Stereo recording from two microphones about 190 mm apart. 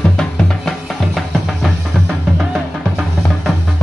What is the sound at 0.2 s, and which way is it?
Music, centre (ahead or behind).